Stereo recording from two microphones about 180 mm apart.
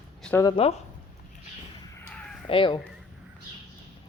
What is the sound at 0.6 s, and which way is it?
Speech, 30° left (ahead or behind).